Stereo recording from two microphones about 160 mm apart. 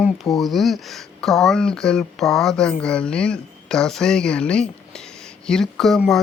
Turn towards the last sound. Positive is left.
turn(degrees=0)  # may be behind; listen again after turning